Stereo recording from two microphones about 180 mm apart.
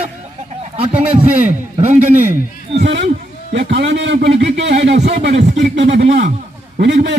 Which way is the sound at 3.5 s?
70° right (ahead or behind).